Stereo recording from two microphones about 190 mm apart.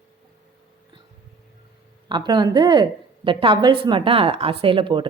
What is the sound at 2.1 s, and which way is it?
A woman's voice, 25° right (ahead or behind).